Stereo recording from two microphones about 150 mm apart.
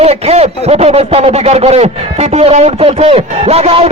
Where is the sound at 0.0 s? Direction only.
45° right (ahead or behind).